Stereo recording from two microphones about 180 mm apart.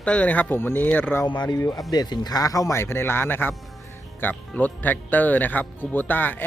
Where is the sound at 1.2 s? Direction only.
25° left (ahead or behind).